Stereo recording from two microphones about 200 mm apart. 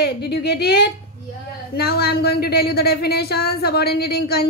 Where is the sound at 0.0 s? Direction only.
55° left (ahead or behind).